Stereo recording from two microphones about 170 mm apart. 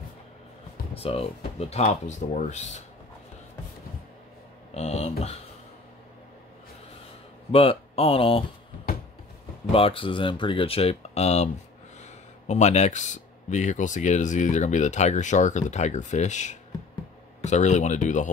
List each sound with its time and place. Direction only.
0.9 s speech: 35° left (ahead or behind)
4.7 s speech: 40° left (ahead or behind)
7.5 s speech: 35° left (ahead or behind)
9.7 s speech: 30° left (ahead or behind); by 18.3 s 50° left (ahead or behind)